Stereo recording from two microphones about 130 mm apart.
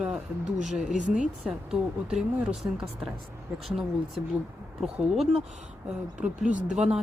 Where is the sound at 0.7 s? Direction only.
5° right (ahead or behind).